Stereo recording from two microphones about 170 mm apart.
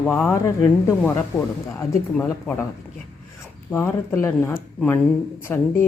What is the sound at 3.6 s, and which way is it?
A woman's voice, 15° left (ahead or behind).